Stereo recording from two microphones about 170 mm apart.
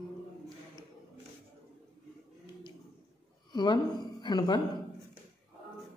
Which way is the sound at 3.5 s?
25° left (ahead or behind).